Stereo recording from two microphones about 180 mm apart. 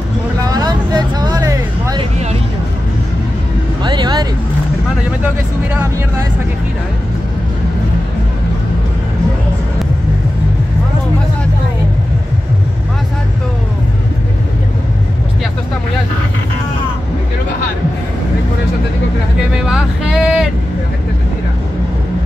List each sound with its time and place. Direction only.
0.5 s music: 20° right (ahead or behind)
3.8 s vehicle: 25° right (ahead or behind)
19.6 s vehicle: 5° right (ahead or behind)